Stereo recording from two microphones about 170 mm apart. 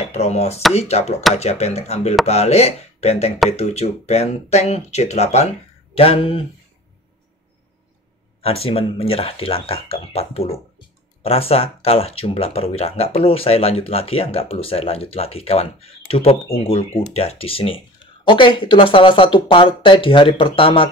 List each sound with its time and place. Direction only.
0.0 s speech: 40° left (ahead or behind)
8.4 s speech: 35° left (ahead or behind)